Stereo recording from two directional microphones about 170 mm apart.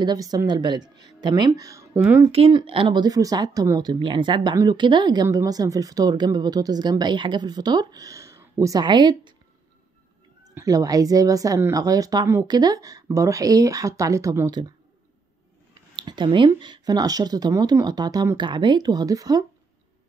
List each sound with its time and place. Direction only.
0.0 s speech: 25° right (ahead or behind)
2.2 s speech: 30° right (ahead or behind)
10.4 s speech: 20° right (ahead or behind)
16.0 s speech: 25° right (ahead or behind)